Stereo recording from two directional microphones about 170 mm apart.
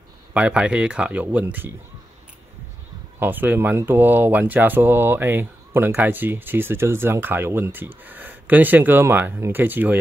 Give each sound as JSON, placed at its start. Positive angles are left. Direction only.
{"t": 0.3, "sound": "speech", "side_deg": -5}
{"t": 3.2, "sound": "speech", "side_deg": -10}